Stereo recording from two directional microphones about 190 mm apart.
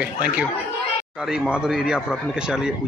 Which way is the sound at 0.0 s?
5° right (ahead or behind).